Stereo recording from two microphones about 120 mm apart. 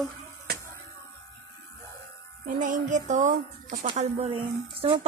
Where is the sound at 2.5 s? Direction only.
90° right.